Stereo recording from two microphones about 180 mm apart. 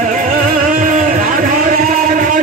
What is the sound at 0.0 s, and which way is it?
Music, 45° right (ahead or behind).